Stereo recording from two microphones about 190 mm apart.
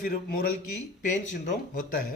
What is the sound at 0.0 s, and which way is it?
Speech, 45° left (ahead or behind).